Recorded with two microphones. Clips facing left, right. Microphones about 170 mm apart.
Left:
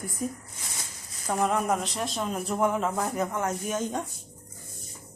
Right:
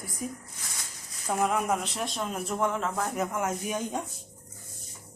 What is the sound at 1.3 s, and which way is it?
Speech, 5° right (ahead or behind).